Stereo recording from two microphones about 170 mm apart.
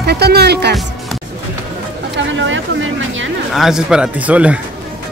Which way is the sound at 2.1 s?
90° right.